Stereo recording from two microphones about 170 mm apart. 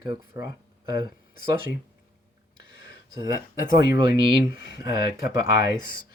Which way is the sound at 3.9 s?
30° right (ahead or behind).